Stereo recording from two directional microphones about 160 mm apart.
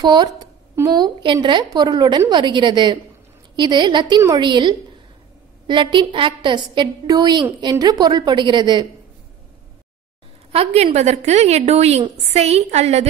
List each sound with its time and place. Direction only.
0.0 s a woman's voice: 25° right (ahead or behind)
10.5 s a woman's voice: 40° right (ahead or behind)